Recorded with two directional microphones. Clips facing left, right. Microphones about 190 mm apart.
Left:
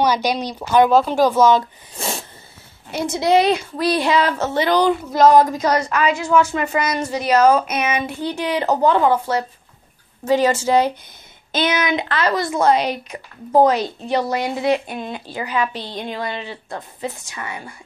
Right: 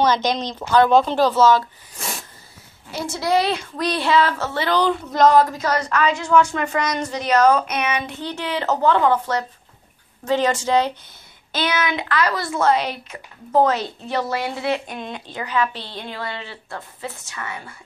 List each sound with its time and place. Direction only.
0.0 s speech: 10° left (ahead or behind)
2.0 s a sound: 30° left (ahead or behind)
2.9 s a woman's voice: 20° left (ahead or behind)
11.5 s speech: 20° left (ahead or behind)
15.0 s speech: 5° left (ahead or behind)